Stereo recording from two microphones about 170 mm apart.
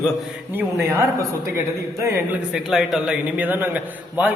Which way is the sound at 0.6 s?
15° right (ahead or behind).